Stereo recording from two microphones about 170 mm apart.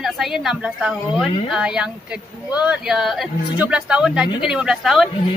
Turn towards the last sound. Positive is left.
turn(degrees=0)  # may be behind; listen again after turning